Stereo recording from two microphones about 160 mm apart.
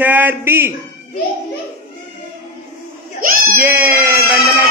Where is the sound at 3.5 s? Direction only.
10° right (ahead or behind).